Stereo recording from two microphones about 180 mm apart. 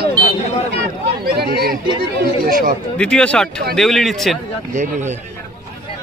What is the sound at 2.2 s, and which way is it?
Speech, 50° right (ahead or behind).